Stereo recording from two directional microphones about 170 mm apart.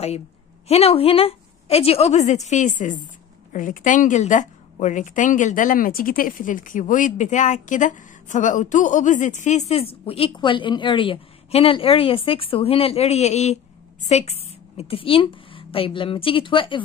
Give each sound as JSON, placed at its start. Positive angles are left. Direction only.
{"t": 0.7, "sound": "a woman's voice", "side_deg": 35}